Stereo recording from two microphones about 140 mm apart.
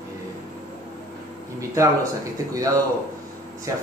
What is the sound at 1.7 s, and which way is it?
Speech, 25° right (ahead or behind).